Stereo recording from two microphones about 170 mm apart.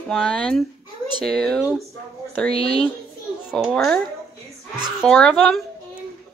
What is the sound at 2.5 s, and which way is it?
Speech, 35° left (ahead or behind).